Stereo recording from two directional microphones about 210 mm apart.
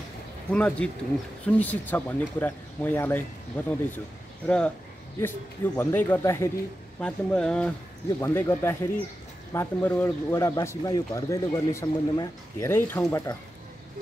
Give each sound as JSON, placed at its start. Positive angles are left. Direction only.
{"t": 0.5, "sound": "a man's voice", "side_deg": 5}
{"t": 5.8, "sound": "a man's voice", "side_deg": 10}